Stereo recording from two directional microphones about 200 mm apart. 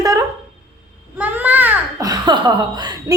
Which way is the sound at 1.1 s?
10° right (ahead or behind).